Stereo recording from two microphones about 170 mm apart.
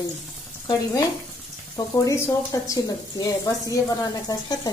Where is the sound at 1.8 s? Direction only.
25° left (ahead or behind).